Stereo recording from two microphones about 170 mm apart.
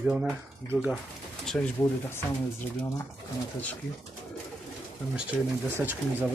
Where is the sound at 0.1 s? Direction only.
5° right (ahead or behind).